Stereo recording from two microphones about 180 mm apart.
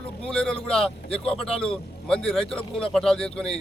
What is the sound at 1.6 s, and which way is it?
A man's voice, 5° left (ahead or behind).